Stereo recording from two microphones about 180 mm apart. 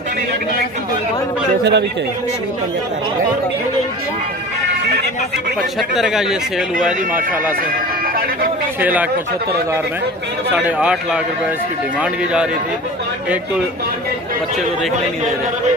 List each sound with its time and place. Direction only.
1.6 s speech: 70° right (ahead or behind)
5.8 s speech: centre (ahead or behind)
8.8 s speech: 10° right (ahead or behind)
10.5 s speech: 5° right (ahead or behind)